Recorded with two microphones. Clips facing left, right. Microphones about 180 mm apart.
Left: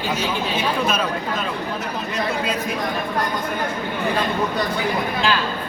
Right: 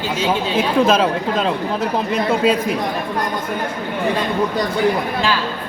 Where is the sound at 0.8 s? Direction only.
90° right.